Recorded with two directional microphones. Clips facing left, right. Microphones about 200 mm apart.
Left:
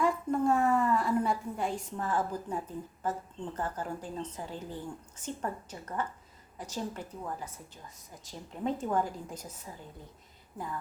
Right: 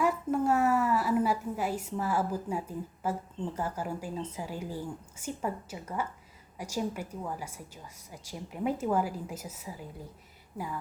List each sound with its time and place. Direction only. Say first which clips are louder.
0.0 s a woman's voice: even; 5° right (ahead or behind)